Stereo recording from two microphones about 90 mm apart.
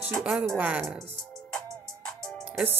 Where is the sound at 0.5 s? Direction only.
15° right (ahead or behind).